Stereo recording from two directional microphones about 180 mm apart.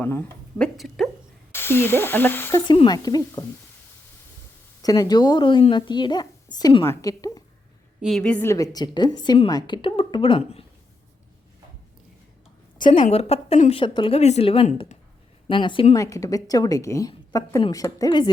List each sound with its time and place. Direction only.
0.0 s speech: 10° left (ahead or behind)
0.8 s a woman's voice: centre (ahead or behind)
1.5 s speech: 10° left (ahead or behind)
2.6 s speech: 25° left (ahead or behind)
4.8 s speech: 20° left (ahead or behind)
8.0 s speech: 5° left (ahead or behind); by 10.7 s 30° left (ahead or behind)
13.0 s a woman's voice: 35° left (ahead or behind)
15.4 s speech: 25° left (ahead or behind)
16.0 s speech: 20° left (ahead or behind)